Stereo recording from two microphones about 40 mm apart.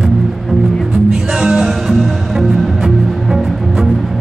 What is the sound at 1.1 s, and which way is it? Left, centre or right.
Music, centre.